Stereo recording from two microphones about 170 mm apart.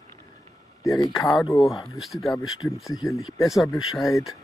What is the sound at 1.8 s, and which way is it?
Speech, centre (ahead or behind).